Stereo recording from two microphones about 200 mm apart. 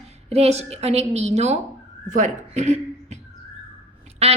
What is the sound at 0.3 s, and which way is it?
A woman's voice, 30° right (ahead or behind).